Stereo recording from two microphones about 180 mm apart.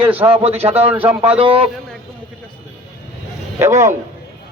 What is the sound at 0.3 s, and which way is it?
Speech, 35° right (ahead or behind).